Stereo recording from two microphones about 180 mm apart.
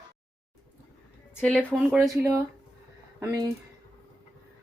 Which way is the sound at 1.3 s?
5° left (ahead or behind).